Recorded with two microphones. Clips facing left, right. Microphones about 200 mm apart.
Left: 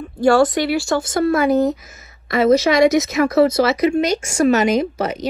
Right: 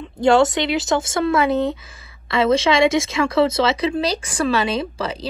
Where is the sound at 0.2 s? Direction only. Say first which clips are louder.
Left 1 dB; 20° right (ahead or behind).